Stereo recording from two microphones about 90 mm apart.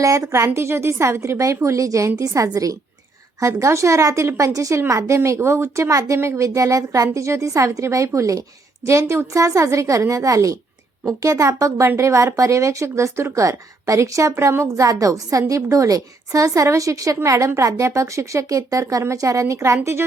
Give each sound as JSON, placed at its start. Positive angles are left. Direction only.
{"t": 0.0, "sound": "speech", "side_deg": -35}